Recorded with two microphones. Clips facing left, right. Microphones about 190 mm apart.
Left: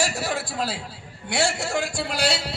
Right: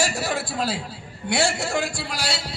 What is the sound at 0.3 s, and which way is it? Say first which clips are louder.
Speech: right 2 dB; 70° right (ahead or behind).